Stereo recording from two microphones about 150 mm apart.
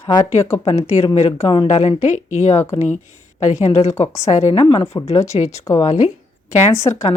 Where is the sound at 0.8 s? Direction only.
45° left (ahead or behind).